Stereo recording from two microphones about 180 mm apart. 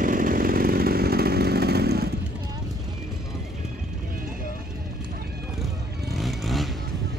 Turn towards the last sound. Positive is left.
turn(degrees=0)  # may be behind; listen again after turning